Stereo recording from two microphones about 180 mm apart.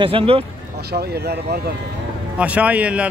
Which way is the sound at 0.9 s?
65° right (ahead or behind).